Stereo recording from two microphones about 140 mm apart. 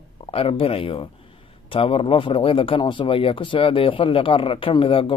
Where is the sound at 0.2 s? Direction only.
40° left (ahead or behind).